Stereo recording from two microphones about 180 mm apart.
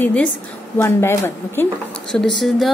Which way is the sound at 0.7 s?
15° left (ahead or behind).